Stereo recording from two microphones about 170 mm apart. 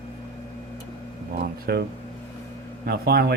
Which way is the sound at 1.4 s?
70° right (ahead or behind).